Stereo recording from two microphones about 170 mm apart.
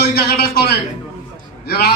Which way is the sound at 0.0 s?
70° left (ahead or behind).